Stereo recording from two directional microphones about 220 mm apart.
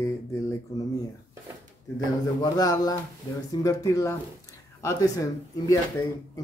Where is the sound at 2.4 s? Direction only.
15° left (ahead or behind).